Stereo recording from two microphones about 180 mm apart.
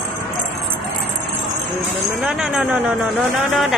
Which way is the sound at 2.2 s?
5° right (ahead or behind).